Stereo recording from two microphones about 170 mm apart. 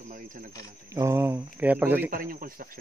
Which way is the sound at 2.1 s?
55° right (ahead or behind).